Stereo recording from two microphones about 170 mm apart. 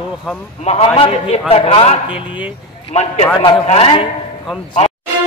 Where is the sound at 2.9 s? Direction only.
40° left (ahead or behind).